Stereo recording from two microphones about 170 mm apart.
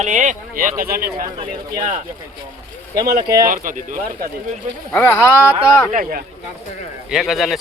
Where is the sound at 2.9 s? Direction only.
20° right (ahead or behind).